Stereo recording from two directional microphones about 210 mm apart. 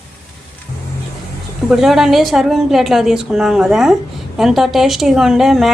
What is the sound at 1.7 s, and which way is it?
A woman's voice, centre (ahead or behind).